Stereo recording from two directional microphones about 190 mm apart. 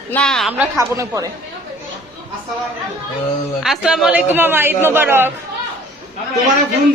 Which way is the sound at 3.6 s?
5° right (ahead or behind).